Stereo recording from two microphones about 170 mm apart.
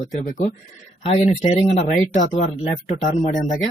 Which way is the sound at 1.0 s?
35° left (ahead or behind).